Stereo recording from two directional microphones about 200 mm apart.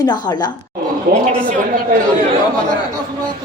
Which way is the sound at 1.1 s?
45° right (ahead or behind).